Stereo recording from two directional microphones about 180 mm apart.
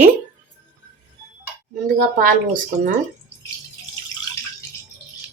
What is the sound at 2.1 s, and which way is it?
Speech, 45° right (ahead or behind).